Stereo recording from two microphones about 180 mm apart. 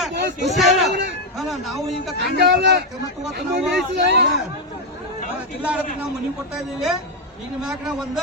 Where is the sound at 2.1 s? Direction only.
65° right (ahead or behind).